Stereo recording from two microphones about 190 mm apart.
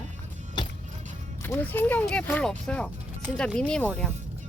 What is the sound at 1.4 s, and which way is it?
Speech, 10° left (ahead or behind).